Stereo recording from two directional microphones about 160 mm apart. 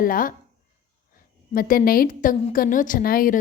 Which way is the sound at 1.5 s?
65° left (ahead or behind).